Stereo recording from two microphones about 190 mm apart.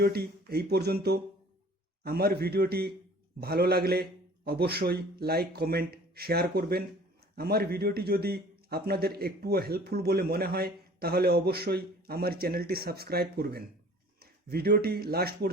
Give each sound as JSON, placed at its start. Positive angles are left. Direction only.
{"t": 0.0, "sound": "a man's voice", "side_deg": -55}